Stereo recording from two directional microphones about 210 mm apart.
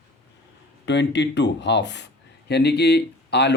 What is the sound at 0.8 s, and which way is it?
Speech, 55° left (ahead or behind).